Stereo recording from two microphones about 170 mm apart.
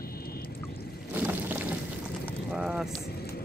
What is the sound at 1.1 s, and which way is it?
Boat, 10° right (ahead or behind).